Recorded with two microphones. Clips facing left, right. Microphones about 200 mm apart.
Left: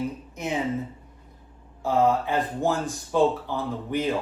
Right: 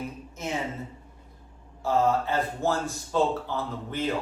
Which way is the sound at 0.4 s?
15° left (ahead or behind).